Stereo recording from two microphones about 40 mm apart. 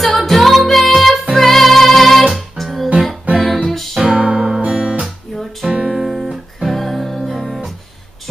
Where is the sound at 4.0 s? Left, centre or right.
Centre.